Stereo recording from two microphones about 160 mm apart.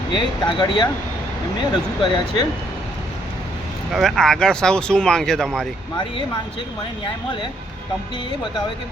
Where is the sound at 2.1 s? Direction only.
25° left (ahead or behind).